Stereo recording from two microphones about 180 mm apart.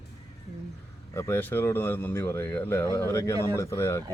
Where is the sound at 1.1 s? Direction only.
15° left (ahead or behind).